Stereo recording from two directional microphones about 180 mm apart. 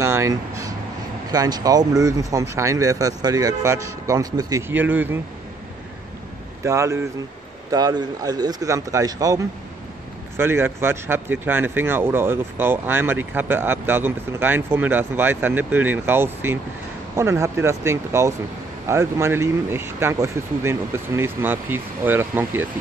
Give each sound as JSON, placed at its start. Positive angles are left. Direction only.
{"t": 0.0, "sound": "a sound", "side_deg": -15}
{"t": 1.3, "sound": "speech", "side_deg": -20}
{"t": 6.6, "sound": "speech", "side_deg": -15}